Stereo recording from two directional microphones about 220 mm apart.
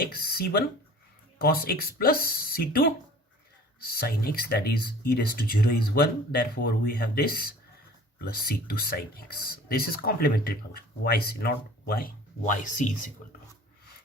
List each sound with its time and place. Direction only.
0.1 s speech: 45° left (ahead or behind)